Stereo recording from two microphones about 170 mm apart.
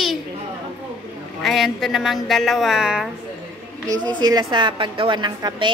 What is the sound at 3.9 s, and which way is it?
A woman's voice, 25° right (ahead or behind).